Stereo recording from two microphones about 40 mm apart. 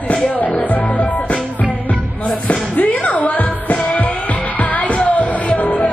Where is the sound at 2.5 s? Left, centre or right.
Left.